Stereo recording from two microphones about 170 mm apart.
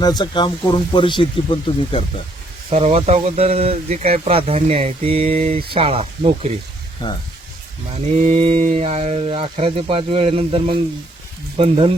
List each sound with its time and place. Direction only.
0.0 s speech: 25° left (ahead or behind)
2.7 s speech: 40° right (ahead or behind)
7.0 s speech: 25° left (ahead or behind)
8.1 s speech: 40° right (ahead or behind)